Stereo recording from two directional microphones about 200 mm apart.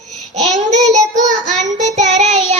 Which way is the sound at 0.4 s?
35° right (ahead or behind).